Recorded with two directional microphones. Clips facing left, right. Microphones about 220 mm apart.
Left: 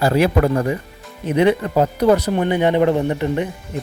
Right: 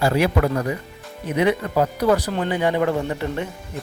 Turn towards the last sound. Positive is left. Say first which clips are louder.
# left 5 dB
turn(degrees=20)  # may be behind; listen again after turning